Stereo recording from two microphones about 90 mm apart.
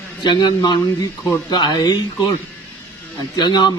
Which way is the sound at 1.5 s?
55° left (ahead or behind).